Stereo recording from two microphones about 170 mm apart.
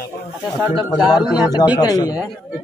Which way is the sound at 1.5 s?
25° left (ahead or behind).